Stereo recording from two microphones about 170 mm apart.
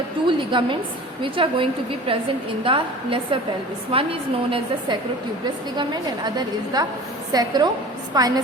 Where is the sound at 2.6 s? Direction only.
30° right (ahead or behind).